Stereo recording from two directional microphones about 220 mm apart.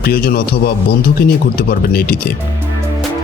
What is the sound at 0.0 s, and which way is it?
Speech, 45° left (ahead or behind).